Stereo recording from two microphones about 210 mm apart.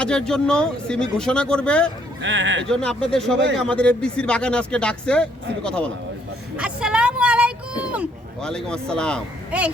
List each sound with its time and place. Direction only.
0.0 s speech: 5° left (ahead or behind)
2.2 s speech: 60° right (ahead or behind)
2.6 s speech: 5° left (ahead or behind)
6.6 s vehicle: 5° right (ahead or behind)
7.8 s speech: 5° right (ahead or behind)
9.5 s speech: 5° right (ahead or behind)